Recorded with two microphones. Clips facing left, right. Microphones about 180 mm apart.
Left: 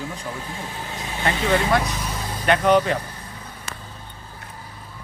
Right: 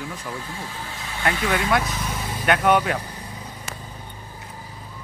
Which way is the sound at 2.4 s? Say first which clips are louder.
Left 2 dB; 5° right (ahead or behind).